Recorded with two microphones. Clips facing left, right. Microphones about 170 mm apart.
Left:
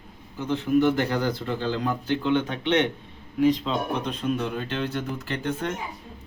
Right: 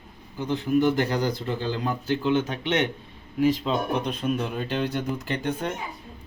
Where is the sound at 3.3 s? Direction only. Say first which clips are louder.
Left 1 dB; 5° right (ahead or behind).